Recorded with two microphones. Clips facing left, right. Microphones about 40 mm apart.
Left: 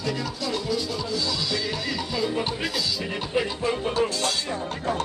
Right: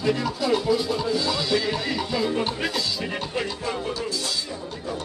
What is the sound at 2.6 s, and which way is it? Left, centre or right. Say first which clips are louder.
Music: right 1 dB; centre.